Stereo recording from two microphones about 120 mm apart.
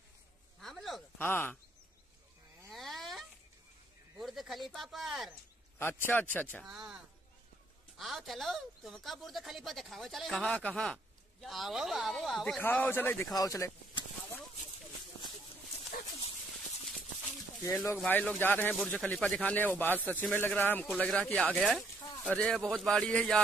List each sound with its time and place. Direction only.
0.6 s a sound: centre (ahead or behind)
1.1 s speech: 15° left (ahead or behind)
2.7 s a sound: centre (ahead or behind)
5.8 s speech: 20° left (ahead or behind)
6.6 s speech: 5° right (ahead or behind)
8.0 s speech: centre (ahead or behind)
12.5 s speech: 10° left (ahead or behind); by 13.7 s 30° left (ahead or behind)
18.0 s speech: 10° left (ahead or behind)
18.8 s speech: 5° left (ahead or behind)